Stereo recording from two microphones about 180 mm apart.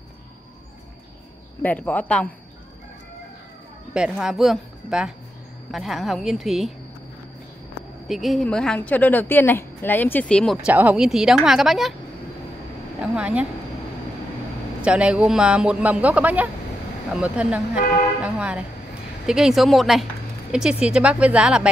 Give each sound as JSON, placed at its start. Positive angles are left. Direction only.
{"t": 1.6, "sound": "a woman's voice", "side_deg": 10}
{"t": 3.9, "sound": "speech", "side_deg": -5}
{"t": 8.1, "sound": "a woman's voice", "side_deg": 0}
{"t": 10.7, "sound": "speech", "side_deg": -10}
{"t": 13.0, "sound": "a man's voice", "side_deg": -5}
{"t": 14.9, "sound": "a man's voice", "side_deg": -5}
{"t": 18.2, "sound": "music", "side_deg": -5}
{"t": 19.2, "sound": "speech", "side_deg": -5}